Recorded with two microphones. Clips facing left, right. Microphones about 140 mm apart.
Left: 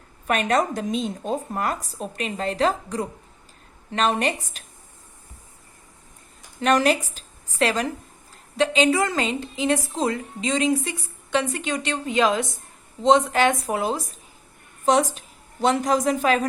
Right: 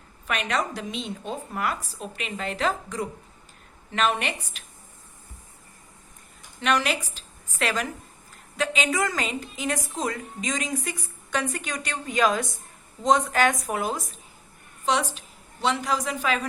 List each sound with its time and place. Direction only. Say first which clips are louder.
0.3 s a woman's voice: left 6 dB; 45° left (ahead or behind)
6.6 s a woman's voice: left 5 dB; 45° left (ahead or behind)
14.8 s a man's voice: left 6 dB; 45° left (ahead or behind)